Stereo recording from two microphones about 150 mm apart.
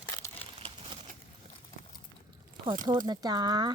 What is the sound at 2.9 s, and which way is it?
Speech, 30° right (ahead or behind).